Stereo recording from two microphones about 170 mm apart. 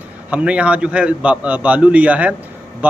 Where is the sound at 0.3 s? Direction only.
5° right (ahead or behind).